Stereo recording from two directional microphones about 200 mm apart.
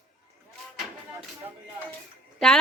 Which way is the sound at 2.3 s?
5° left (ahead or behind).